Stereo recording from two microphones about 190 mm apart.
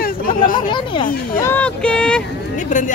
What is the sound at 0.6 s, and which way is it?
Speech, 25° left (ahead or behind).